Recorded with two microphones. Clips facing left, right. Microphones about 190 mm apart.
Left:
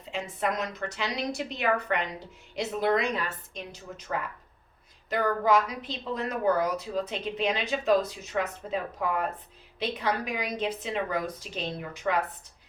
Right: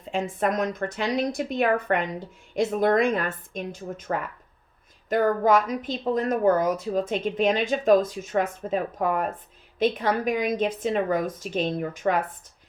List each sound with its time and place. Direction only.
0.0 s speech: 50° right (ahead or behind)